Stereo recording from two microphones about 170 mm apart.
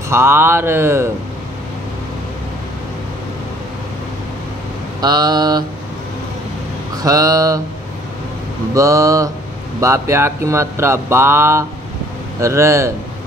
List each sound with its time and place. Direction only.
0.1 s speech: 15° right (ahead or behind)
5.0 s speech: 25° right (ahead or behind)
7.0 s speech: 20° right (ahead or behind)
8.7 s speech: 20° right (ahead or behind)